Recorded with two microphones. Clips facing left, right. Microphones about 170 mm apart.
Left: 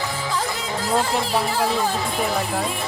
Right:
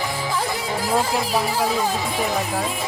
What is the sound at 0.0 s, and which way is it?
Speech, 15° right (ahead or behind).